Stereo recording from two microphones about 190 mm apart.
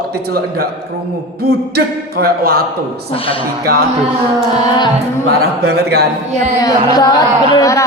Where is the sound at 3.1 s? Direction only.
30° left (ahead or behind).